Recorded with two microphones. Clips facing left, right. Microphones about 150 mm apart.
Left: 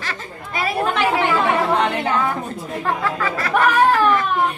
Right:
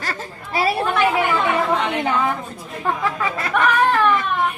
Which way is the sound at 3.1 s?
20° right (ahead or behind).